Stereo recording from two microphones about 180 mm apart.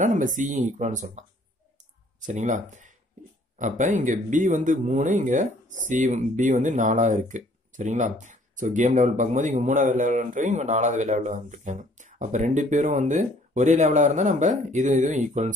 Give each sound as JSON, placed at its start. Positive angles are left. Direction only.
{"t": 0.0, "sound": "speech", "side_deg": -45}